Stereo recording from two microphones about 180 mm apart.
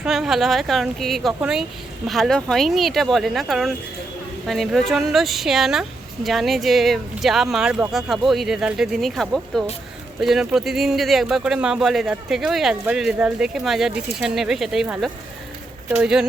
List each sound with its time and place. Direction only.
0.0 s speech: centre (ahead or behind)